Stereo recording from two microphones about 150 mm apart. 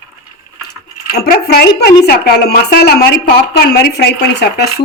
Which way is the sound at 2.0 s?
90° left.